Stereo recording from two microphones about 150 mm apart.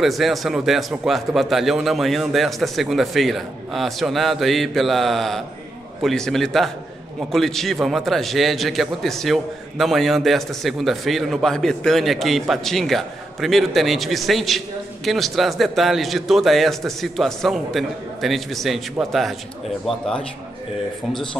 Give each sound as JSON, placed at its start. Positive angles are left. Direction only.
{"t": 0.0, "sound": "a man's voice", "side_deg": 0}